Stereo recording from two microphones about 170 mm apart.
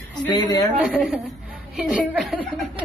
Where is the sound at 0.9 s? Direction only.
Centre (ahead or behind).